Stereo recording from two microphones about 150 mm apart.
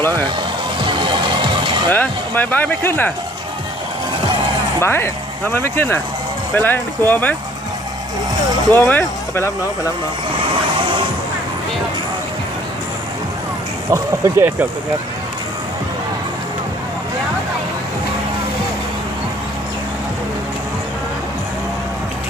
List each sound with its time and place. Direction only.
0.0 s speech: 15° left (ahead or behind)
0.8 s music: 30° right (ahead or behind)
1.9 s speech: 10° left (ahead or behind)
4.8 s speech: 15° left (ahead or behind)
8.7 s speech: 15° left (ahead or behind)
13.9 s speech: 15° right (ahead or behind)